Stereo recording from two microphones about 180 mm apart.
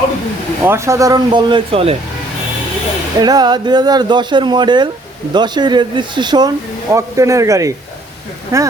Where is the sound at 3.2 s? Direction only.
20° right (ahead or behind).